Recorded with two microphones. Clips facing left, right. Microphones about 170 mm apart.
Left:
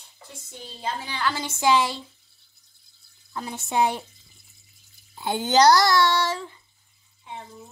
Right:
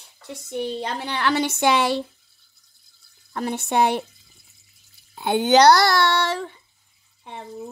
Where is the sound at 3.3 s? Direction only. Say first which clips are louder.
Right 6 dB; 65° right (ahead or behind).